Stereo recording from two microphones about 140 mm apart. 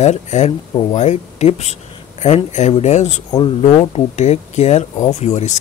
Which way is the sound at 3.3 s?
40° left (ahead or behind).